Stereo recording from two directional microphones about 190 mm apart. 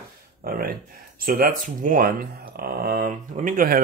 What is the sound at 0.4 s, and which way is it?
Speech, 50° right (ahead or behind).